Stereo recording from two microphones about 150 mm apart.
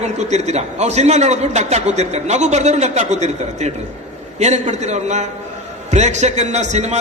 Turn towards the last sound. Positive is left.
turn(degrees=-50)  # may be behind; listen again after turning